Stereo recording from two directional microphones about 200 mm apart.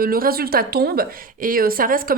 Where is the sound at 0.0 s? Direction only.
45° right (ahead or behind).